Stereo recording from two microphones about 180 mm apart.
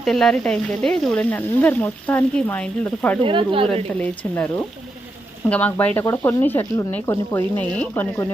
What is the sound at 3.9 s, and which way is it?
Speech, 10° left (ahead or behind).